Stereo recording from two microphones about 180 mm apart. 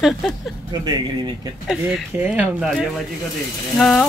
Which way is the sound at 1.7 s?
5° right (ahead or behind).